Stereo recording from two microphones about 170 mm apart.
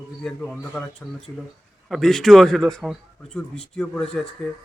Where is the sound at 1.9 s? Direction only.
Centre (ahead or behind).